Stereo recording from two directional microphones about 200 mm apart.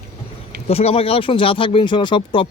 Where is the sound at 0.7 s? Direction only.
30° left (ahead or behind).